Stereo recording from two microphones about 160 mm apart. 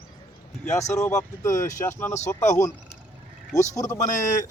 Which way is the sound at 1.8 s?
15° left (ahead or behind).